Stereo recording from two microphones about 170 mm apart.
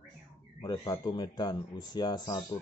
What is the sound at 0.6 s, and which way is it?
Speech, 25° left (ahead or behind).